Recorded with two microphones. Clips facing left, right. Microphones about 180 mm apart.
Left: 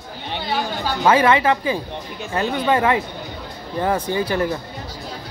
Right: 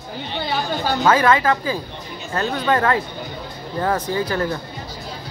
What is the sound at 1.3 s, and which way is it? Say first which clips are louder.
Speech: left 1 dB; 25° left (ahead or behind).